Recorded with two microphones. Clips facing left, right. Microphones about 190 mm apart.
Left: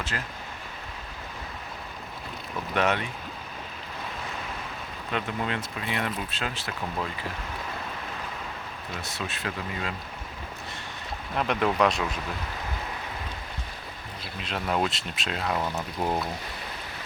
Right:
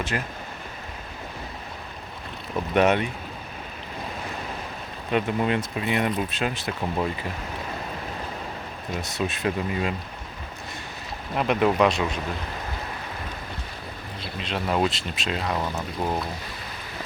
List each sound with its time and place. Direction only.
0.1 s speech: 20° right (ahead or behind)
2.7 s speech: 20° right (ahead or behind)
5.1 s speech: 20° right (ahead or behind)
8.9 s speech: 15° right (ahead or behind)
11.3 s speech: 5° right (ahead or behind)
14.3 s speech: centre (ahead or behind)